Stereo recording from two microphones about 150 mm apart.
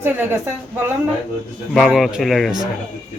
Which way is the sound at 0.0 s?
15° right (ahead or behind).